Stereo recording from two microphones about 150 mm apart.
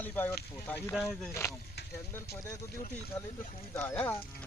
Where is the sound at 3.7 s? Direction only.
10° left (ahead or behind).